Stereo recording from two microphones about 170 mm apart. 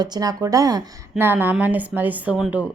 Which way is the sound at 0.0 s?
25° right (ahead or behind).